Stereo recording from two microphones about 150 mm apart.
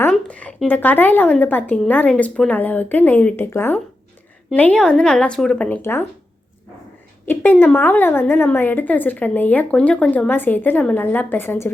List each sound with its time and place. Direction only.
0.1 s a woman's voice: 10° left (ahead or behind)
7.3 s a woman's voice: 10° left (ahead or behind)